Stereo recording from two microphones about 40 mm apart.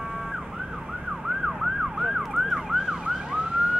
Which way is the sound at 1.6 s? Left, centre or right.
Centre.